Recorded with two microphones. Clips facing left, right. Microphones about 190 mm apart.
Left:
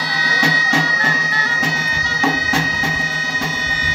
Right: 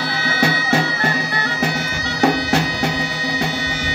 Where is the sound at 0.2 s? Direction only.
55° right (ahead or behind).